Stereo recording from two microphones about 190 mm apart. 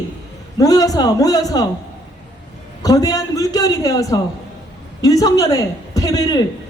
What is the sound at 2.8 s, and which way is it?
A woman's voice, 20° left (ahead or behind).